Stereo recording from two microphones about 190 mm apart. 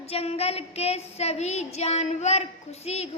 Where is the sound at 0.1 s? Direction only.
30° left (ahead or behind).